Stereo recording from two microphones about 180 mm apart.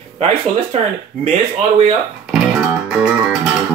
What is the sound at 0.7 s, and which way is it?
Speech, 40° right (ahead or behind).